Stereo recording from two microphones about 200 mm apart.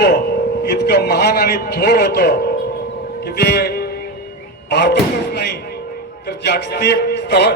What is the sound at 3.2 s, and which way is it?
Music, 55° left (ahead or behind).